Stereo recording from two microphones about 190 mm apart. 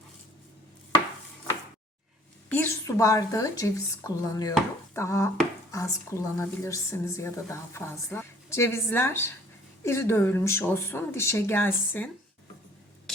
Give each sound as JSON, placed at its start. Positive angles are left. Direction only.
{"t": 2.5, "sound": "a woman's voice", "side_deg": 10}